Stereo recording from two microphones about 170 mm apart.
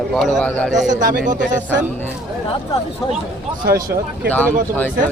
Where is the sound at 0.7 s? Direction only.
45° right (ahead or behind).